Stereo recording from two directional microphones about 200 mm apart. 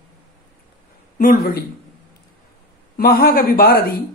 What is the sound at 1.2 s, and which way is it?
Speech, 45° left (ahead or behind).